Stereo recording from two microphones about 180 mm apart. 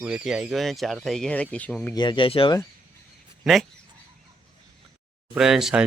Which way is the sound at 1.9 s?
25° left (ahead or behind).